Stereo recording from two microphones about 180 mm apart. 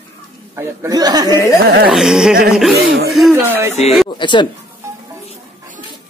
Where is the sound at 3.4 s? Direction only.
10° right (ahead or behind).